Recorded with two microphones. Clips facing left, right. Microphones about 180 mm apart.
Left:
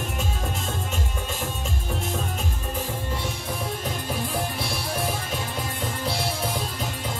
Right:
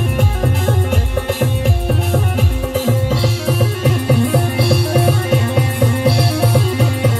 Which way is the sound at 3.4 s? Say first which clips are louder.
Right 13 dB; 75° right (ahead or behind).